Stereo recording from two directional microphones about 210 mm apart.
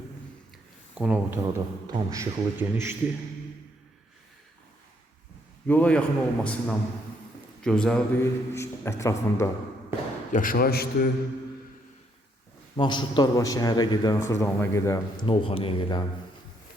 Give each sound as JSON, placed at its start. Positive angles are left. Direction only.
{"t": 0.9, "sound": "speech", "side_deg": -5}
{"t": 5.6, "sound": "a man's voice", "side_deg": 10}
{"t": 10.3, "sound": "a man's voice", "side_deg": 40}
{"t": 12.7, "sound": "a man's voice", "side_deg": 20}